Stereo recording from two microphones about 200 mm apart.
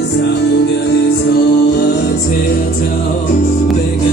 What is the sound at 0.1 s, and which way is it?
Music, 55° left (ahead or behind).